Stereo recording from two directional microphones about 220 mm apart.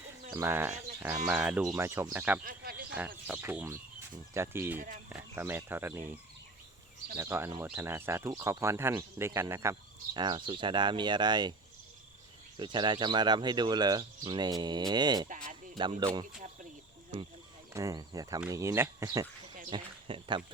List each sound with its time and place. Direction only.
0.3 s speech: 15° right (ahead or behind)
2.4 s speech: 40° right (ahead or behind)
3.2 s speech: 10° right (ahead or behind)
7.2 s speech: 10° right (ahead or behind)
12.5 s speech: 20° right (ahead or behind)
17.7 s speech: 15° right (ahead or behind)